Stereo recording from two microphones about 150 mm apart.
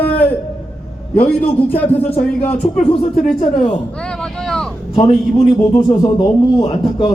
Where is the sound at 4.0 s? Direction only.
5° left (ahead or behind).